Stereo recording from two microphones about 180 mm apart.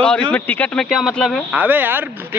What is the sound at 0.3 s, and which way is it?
Speech, 10° left (ahead or behind).